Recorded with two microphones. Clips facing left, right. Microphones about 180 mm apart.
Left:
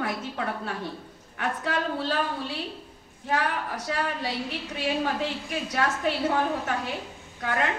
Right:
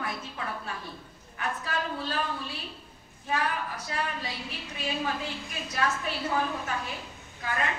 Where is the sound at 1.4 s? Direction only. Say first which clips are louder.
Left 4 dB; 90° left.